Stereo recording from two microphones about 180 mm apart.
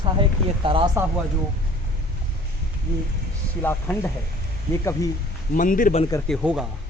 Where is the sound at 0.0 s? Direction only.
30° right (ahead or behind).